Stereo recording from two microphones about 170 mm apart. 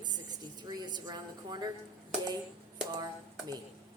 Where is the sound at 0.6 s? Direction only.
25° right (ahead or behind).